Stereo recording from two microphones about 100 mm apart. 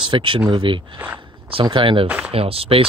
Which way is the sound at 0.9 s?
20° right (ahead or behind).